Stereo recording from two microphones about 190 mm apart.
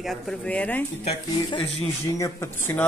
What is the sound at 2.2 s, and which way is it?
Speech, 15° left (ahead or behind).